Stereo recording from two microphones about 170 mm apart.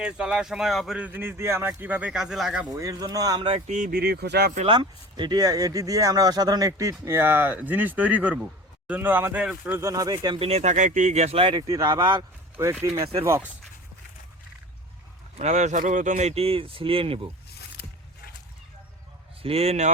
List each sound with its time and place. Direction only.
0.0 s speech: 5° right (ahead or behind)
2.7 s speech: 20° right (ahead or behind)
3.7 s speech: 50° right (ahead or behind); by 4.5 s 70° right (ahead or behind)
4.6 s speech: 30° right (ahead or behind)
10.4 s speech: 40° right (ahead or behind)
11.7 s speech: 20° right (ahead or behind)
15.4 s speech: 45° right (ahead or behind)
17.8 s a sound: 75° left (ahead or behind)
19.4 s speech: 35° right (ahead or behind)